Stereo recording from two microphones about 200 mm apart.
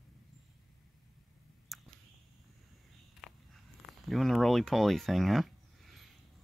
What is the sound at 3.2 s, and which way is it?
Walk, centre (ahead or behind).